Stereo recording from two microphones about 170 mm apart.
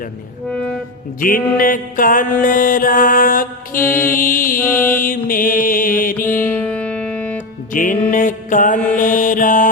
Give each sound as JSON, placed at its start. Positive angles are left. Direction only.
{"t": 1.2, "sound": "music", "side_deg": 55}
{"t": 6.3, "sound": "music", "side_deg": 15}
{"t": 7.7, "sound": "music", "side_deg": 50}
{"t": 9.0, "sound": "mantra", "side_deg": 50}